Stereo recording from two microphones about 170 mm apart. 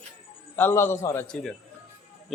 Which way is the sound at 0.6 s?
15° left (ahead or behind).